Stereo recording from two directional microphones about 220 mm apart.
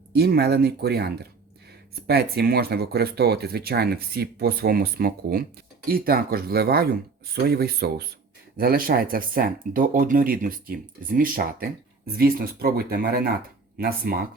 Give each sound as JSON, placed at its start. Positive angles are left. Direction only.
{"t": 0.1, "sound": "speech", "side_deg": -45}